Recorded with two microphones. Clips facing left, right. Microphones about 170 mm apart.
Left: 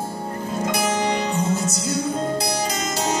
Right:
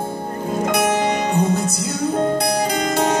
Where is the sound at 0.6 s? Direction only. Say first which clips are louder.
Right 4 dB; 55° right (ahead or behind).